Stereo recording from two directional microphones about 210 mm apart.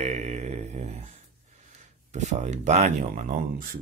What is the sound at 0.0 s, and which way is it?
Mantra, 35° right (ahead or behind).